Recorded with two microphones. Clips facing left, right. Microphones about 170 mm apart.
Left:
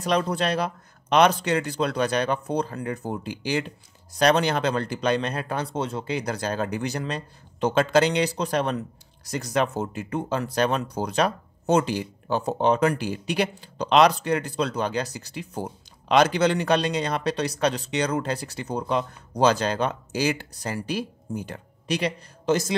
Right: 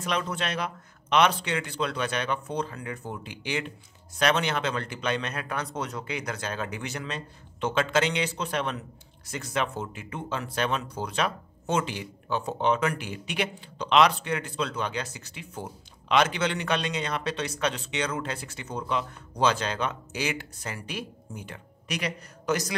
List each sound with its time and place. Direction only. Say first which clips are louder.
0.0 s speech: left 6 dB; 35° left (ahead or behind)